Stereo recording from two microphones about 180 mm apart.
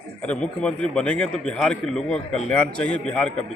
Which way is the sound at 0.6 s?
5° left (ahead or behind).